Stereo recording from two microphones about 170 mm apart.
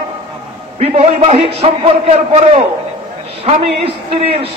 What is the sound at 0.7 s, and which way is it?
A man's voice, 40° right (ahead or behind).